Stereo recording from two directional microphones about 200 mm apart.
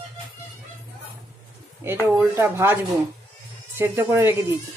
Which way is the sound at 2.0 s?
10° right (ahead or behind).